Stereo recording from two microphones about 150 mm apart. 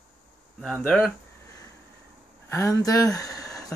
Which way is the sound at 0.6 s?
5° left (ahead or behind).